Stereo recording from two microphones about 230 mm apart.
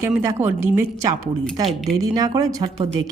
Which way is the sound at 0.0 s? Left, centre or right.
Centre.